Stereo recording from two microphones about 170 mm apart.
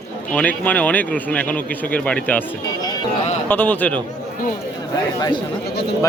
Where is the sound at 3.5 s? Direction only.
10° left (ahead or behind).